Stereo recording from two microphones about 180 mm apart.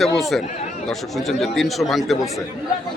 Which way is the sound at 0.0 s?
Centre (ahead or behind).